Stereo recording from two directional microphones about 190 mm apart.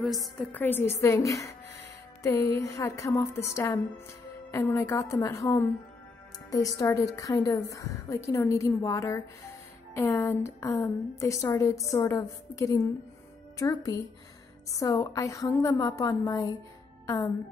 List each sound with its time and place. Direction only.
0.0 s a woman's voice: centre (ahead or behind)
2.2 s a woman's voice: 15° left (ahead or behind)